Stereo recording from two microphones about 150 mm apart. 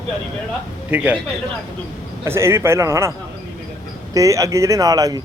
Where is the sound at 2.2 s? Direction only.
15° right (ahead or behind).